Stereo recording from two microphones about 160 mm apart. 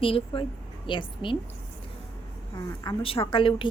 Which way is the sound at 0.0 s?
35° left (ahead or behind).